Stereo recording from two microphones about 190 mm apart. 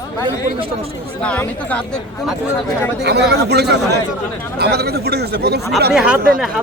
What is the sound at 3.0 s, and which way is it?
Speech, 60° right (ahead or behind).